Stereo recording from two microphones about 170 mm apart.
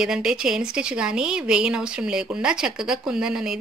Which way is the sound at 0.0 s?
5° right (ahead or behind).